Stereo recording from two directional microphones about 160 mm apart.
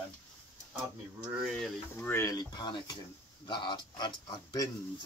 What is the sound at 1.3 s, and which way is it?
Speech, 5° right (ahead or behind).